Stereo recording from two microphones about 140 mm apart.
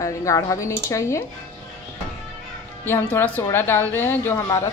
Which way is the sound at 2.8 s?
15° left (ahead or behind).